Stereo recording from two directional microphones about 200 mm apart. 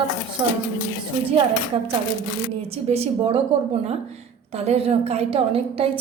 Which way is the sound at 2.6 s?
30° right (ahead or behind).